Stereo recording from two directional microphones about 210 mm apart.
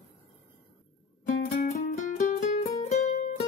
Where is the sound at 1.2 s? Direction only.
40° left (ahead or behind).